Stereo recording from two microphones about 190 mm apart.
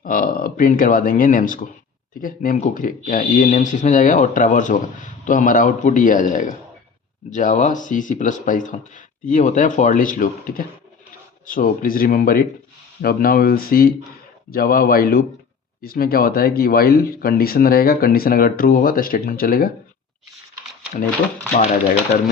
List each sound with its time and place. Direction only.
0.0 s speech: 45° left (ahead or behind)